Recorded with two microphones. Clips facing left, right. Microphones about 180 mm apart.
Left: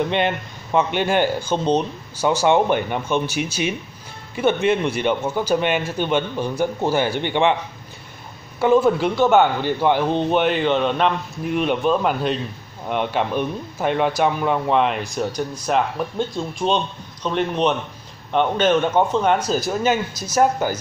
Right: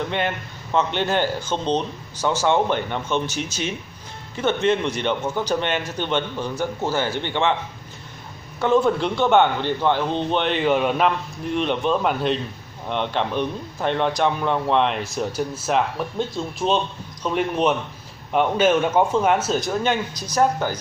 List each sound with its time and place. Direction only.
0.1 s speech: 15° left (ahead or behind)
8.5 s speech: 10° left (ahead or behind)
10.7 s a man's voice: 10° right (ahead or behind)
11.4 s a man's voice: 5° left (ahead or behind)